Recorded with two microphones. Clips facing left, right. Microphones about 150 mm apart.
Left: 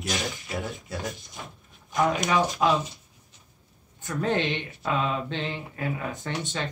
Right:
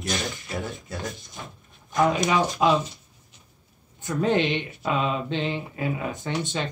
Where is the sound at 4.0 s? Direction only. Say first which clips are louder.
Right 4 dB; 15° right (ahead or behind).